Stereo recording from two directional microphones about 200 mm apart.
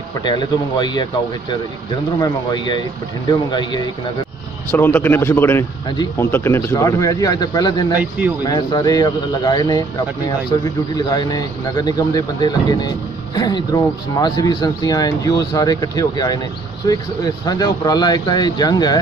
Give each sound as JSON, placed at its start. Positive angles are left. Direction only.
{"t": 0.2, "sound": "speech", "side_deg": 20}
{"t": 2.1, "sound": "speech", "side_deg": 20}
{"t": 4.6, "sound": "a man's voice", "side_deg": 10}